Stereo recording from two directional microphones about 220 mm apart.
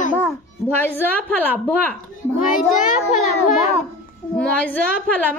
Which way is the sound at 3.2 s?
35° left (ahead or behind).